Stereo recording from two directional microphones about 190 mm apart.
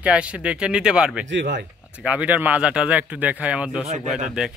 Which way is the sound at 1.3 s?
70° right (ahead or behind).